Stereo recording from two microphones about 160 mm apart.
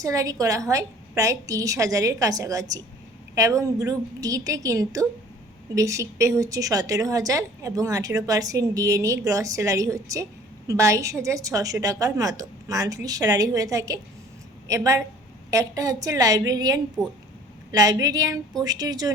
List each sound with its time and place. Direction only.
0.0 s a woman's voice: 20° right (ahead or behind)